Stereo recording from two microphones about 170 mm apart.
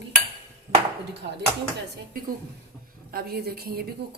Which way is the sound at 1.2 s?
70° right (ahead or behind).